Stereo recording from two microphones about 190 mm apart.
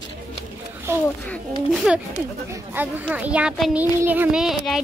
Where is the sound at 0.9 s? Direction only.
15° right (ahead or behind).